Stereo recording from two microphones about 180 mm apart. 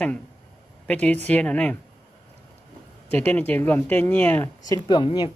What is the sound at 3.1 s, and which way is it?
Speech, 10° left (ahead or behind).